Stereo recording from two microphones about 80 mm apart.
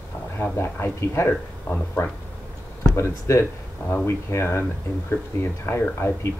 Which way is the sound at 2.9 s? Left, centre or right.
Left.